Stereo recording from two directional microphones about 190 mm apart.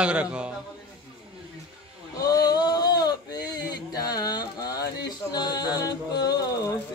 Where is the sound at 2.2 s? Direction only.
20° left (ahead or behind).